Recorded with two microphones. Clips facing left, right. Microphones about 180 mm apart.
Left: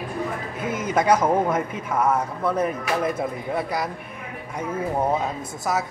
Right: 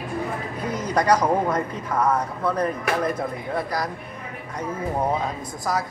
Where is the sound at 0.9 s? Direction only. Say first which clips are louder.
Left 1 dB; 5° left (ahead or behind).